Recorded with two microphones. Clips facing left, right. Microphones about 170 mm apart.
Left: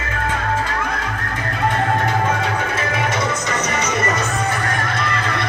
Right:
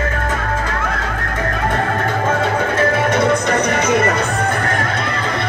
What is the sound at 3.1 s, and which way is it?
Music, 60° right (ahead or behind).